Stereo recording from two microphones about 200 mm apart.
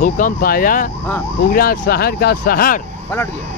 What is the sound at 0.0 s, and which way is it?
Speech, 45° left (ahead or behind).